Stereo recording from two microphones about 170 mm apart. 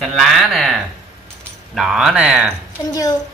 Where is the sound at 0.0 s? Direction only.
Centre (ahead or behind).